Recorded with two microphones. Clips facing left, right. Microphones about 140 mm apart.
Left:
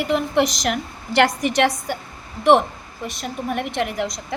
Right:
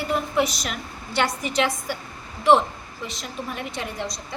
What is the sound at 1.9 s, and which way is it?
Speech, 50° left (ahead or behind).